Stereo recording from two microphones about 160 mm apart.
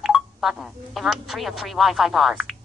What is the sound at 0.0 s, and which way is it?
Speech, 5° right (ahead or behind).